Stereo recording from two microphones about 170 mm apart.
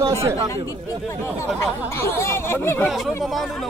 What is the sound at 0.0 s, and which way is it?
Speech, 20° right (ahead or behind).